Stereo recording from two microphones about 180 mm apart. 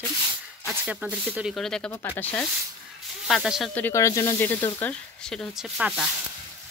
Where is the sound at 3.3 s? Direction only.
Centre (ahead or behind).